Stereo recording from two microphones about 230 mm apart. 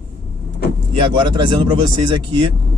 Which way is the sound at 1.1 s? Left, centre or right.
Centre.